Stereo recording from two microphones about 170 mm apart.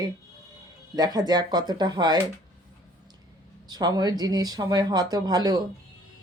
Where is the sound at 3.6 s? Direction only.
25° right (ahead or behind).